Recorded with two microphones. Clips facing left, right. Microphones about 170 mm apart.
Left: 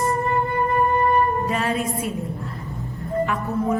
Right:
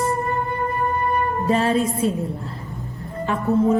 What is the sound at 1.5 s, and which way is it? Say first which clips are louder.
Music: right 5 dB; 30° right (ahead or behind).